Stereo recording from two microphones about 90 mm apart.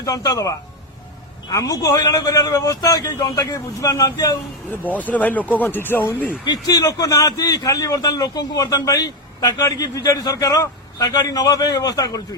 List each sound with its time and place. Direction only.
0.0 s a man's voice: 40° left (ahead or behind)
4.7 s speech: 20° left (ahead or behind)
6.4 s a man's voice: 45° left (ahead or behind)